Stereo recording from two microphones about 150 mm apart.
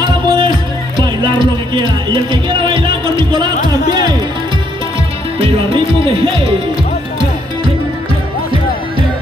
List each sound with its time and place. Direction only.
0.0 s music: 35° right (ahead or behind)
3.3 s music: 30° right (ahead or behind)
6.0 s music: 35° right (ahead or behind)